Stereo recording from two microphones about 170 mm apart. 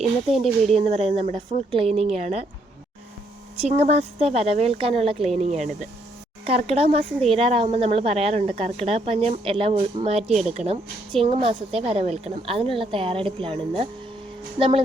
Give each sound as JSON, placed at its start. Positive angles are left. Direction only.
{"t": 0.0, "sound": "speech", "side_deg": 0}
{"t": 0.6, "sound": "a woman's voice", "side_deg": -40}
{"t": 3.6, "sound": "a woman's voice", "side_deg": -40}
{"t": 10.2, "sound": "speech", "side_deg": 0}
{"t": 10.5, "sound": "a woman's voice", "side_deg": -40}